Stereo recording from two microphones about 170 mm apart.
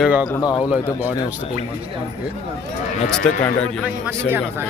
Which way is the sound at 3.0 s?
5° left (ahead or behind).